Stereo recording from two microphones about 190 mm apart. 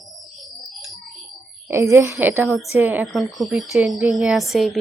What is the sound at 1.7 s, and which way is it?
Speech, 15° right (ahead or behind).